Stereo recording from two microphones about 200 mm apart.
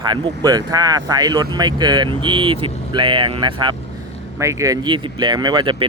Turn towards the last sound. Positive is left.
turn(degrees=-20)  # may be behind; listen again after turning